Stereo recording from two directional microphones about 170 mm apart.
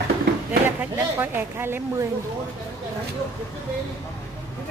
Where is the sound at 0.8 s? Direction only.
10° right (ahead or behind).